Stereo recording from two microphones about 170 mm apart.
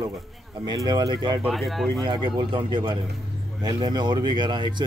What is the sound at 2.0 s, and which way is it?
Speech, 30° right (ahead or behind).